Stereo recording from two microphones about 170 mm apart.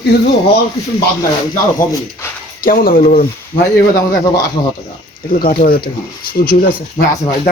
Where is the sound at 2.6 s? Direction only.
55° left (ahead or behind).